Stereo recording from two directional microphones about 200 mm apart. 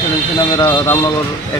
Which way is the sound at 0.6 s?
15° left (ahead or behind).